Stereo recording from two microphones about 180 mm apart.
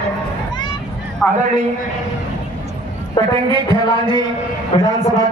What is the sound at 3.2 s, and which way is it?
Speech, 25° left (ahead or behind).